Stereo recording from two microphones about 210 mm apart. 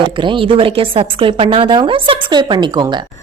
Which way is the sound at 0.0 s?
25° right (ahead or behind).